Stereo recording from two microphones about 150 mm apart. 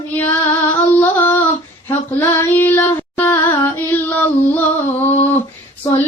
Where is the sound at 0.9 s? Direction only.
15° left (ahead or behind).